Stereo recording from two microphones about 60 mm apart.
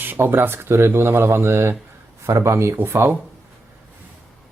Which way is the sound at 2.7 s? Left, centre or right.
Right.